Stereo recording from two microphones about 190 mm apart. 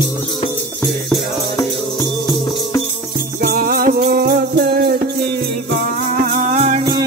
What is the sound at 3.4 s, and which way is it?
Music, 50° right (ahead or behind).